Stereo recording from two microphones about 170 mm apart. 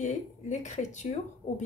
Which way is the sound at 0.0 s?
45° left (ahead or behind).